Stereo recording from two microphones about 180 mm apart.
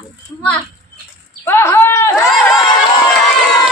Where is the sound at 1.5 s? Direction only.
15° left (ahead or behind).